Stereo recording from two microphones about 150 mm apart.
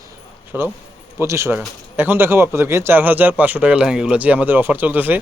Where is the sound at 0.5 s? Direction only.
10° right (ahead or behind).